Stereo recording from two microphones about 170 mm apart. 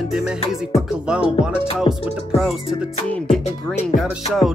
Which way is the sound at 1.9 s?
30° left (ahead or behind).